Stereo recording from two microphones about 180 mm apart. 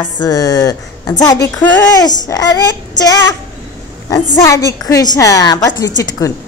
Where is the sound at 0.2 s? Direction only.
20° left (ahead or behind).